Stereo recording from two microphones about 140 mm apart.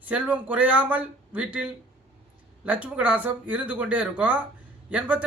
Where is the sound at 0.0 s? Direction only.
10° right (ahead or behind).